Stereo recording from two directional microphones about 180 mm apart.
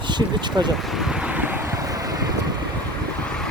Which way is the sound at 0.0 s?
25° right (ahead or behind).